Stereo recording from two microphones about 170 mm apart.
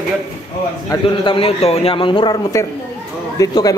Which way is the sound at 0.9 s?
30° left (ahead or behind).